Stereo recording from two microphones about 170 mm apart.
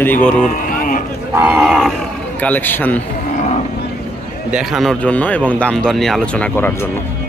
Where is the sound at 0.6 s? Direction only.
55° left (ahead or behind).